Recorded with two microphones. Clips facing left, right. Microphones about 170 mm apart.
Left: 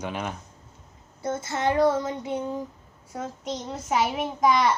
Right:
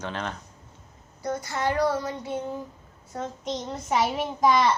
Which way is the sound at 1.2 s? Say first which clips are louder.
Left 1 dB; 25° left (ahead or behind).